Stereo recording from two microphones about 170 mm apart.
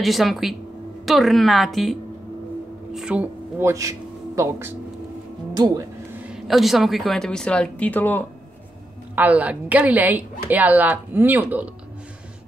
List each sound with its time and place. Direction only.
0.0 s a woman's voice: centre (ahead or behind); by 4.7 s 15° right (ahead or behind)
6.2 s speech: centre (ahead or behind)
9.1 s a woman's voice: 10° right (ahead or behind)